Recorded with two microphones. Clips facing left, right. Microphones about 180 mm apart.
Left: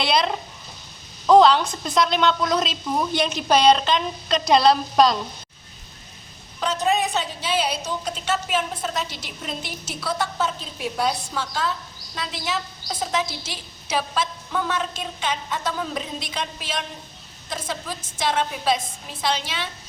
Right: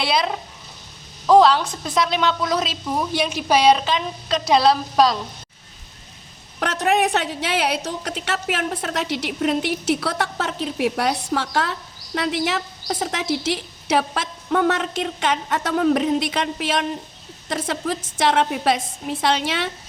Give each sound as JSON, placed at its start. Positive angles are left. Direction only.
{"t": 0.0, "sound": "a woman's voice", "side_deg": -5}
{"t": 6.6, "sound": "a woman's voice", "side_deg": -75}